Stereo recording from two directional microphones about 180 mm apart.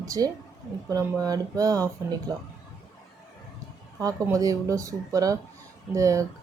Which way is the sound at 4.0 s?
20° right (ahead or behind).